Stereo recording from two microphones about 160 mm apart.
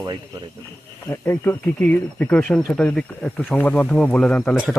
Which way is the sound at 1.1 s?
10° left (ahead or behind).